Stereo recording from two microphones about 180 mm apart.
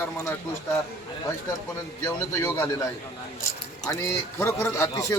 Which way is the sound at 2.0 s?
15° left (ahead or behind).